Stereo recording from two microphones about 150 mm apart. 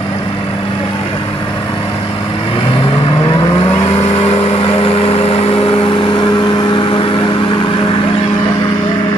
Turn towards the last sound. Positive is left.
turn(degrees=35)  # may be behind; listen again after turning